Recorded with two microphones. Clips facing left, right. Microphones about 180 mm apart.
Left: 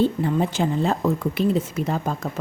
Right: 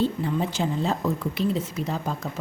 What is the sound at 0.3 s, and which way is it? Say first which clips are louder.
A woman's voice: left 4 dB; 55° left (ahead or behind).